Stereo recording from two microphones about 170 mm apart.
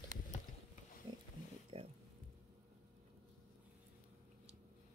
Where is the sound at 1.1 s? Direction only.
25° right (ahead or behind).